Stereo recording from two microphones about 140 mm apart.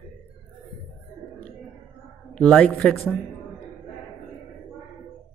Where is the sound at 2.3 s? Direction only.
10° left (ahead or behind).